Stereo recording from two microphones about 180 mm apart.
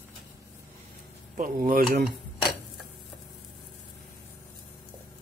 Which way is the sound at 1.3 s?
50° right (ahead or behind).